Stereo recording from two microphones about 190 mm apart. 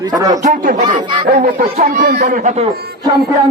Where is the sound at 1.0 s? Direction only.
25° right (ahead or behind).